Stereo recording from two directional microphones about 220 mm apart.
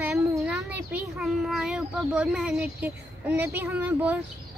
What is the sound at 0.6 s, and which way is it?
A child's voice, 10° right (ahead or behind).